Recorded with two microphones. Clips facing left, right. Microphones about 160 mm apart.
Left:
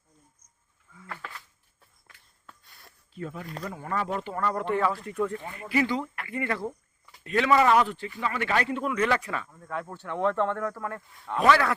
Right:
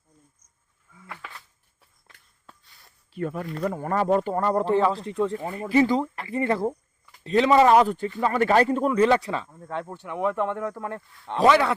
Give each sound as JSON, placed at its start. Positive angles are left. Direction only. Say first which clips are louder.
{"t": 1.0, "sound": "a sound", "louder": "left 1 dB", "side_deg": -10}
{"t": 2.6, "sound": "a sound", "louder": "left 3 dB", "side_deg": 60}
{"t": 3.1, "sound": "speech", "louder": "right 7 dB", "side_deg": -65}
{"t": 5.4, "sound": "speech", "louder": "right 6 dB", "side_deg": -40}
{"t": 9.0, "sound": "speech", "louder": "right 6 dB", "side_deg": -25}
{"t": 9.8, "sound": "speech", "louder": "even", "side_deg": -15}